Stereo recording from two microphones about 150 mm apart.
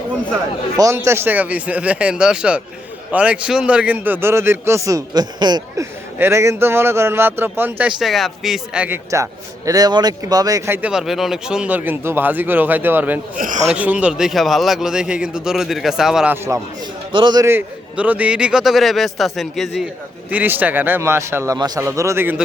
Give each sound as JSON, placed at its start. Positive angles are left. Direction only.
{"t": 0.8, "sound": "speech", "side_deg": -20}
{"t": 6.1, "sound": "speech", "side_deg": -15}
{"t": 9.0, "sound": "speech", "side_deg": -20}
{"t": 10.8, "sound": "speech", "side_deg": -5}
{"t": 13.3, "sound": "a man's voice", "side_deg": -60}
{"t": 13.7, "sound": "a man's voice", "side_deg": -10}
{"t": 16.5, "sound": "speech", "side_deg": -20}
{"t": 17.1, "sound": "a man's voice", "side_deg": -30}
{"t": 17.4, "sound": "a man's voice", "side_deg": -15}
{"t": 20.3, "sound": "speech", "side_deg": -10}